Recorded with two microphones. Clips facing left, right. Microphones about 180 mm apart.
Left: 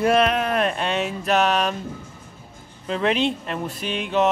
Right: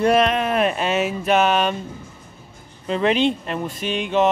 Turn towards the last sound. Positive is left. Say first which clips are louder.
# right 2 dB
turn(degrees=0)  # may be behind; listen again after turning